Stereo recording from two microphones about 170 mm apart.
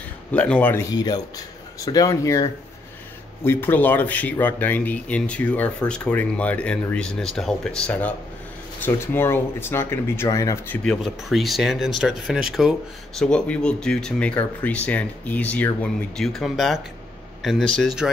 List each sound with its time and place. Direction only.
0.3 s speech: 10° left (ahead or behind)
0.9 s speech: 25° left (ahead or behind)
3.4 s speech: 10° left (ahead or behind)
10.8 s speech: centre (ahead or behind)